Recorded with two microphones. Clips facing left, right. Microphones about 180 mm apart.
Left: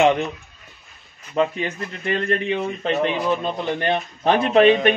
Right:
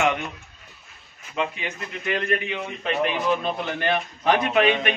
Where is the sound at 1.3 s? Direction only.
40° left (ahead or behind).